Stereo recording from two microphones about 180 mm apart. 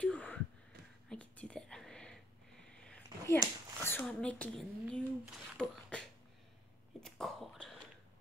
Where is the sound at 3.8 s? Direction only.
10° left (ahead or behind).